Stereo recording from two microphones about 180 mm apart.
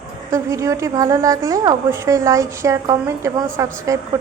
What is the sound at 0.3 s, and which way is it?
A woman's voice, 15° right (ahead or behind).